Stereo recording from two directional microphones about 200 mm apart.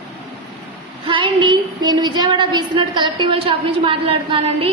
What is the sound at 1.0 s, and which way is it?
A woman's voice, 25° right (ahead or behind).